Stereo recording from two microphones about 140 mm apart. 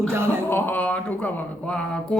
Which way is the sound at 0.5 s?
15° left (ahead or behind).